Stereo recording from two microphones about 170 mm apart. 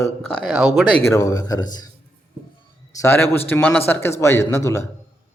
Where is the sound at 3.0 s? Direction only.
15° left (ahead or behind).